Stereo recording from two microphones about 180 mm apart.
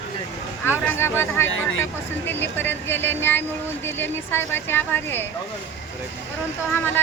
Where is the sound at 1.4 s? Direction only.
90° left.